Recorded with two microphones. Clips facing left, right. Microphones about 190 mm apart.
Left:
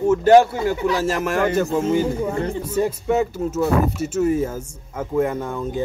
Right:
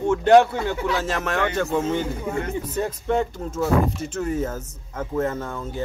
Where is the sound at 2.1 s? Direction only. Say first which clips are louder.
Left 4 dB; 40° left (ahead or behind).